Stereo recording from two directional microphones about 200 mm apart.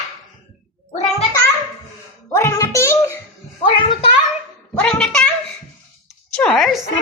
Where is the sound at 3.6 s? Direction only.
25° left (ahead or behind).